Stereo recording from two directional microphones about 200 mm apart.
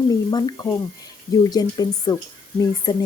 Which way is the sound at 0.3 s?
20° left (ahead or behind).